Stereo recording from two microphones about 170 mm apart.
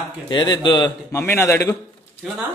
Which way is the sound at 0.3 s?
25° left (ahead or behind).